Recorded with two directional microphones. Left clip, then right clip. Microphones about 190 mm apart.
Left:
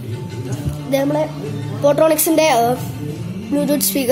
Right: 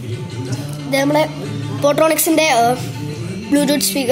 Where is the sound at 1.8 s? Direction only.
Centre (ahead or behind).